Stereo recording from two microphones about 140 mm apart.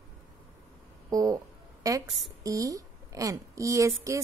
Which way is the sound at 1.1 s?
25° right (ahead or behind).